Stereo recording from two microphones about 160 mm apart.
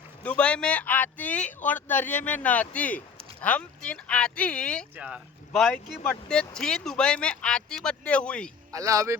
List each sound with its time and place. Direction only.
0.2 s speech: 10° left (ahead or behind)
4.9 s speech: 5° right (ahead or behind)
5.5 s speech: 5° left (ahead or behind)
8.7 s speech: 20° right (ahead or behind)